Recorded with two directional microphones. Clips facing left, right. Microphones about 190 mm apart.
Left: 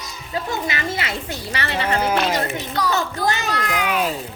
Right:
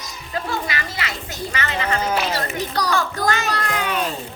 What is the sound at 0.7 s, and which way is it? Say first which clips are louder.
Children playing: left 3 dB; 25° left (ahead or behind).